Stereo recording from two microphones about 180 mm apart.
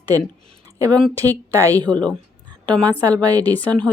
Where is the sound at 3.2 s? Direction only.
20° right (ahead or behind).